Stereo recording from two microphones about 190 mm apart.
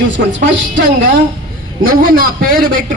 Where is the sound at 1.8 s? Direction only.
50° right (ahead or behind).